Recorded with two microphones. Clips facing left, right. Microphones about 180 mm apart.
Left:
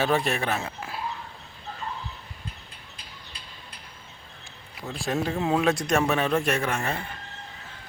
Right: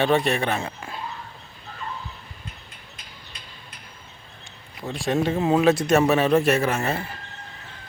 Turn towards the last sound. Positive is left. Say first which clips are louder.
# right 4 dB
turn(degrees=-5)  # may be behind; listen again after turning